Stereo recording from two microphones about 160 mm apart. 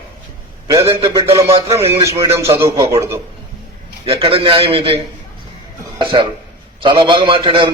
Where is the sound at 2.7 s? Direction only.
35° right (ahead or behind).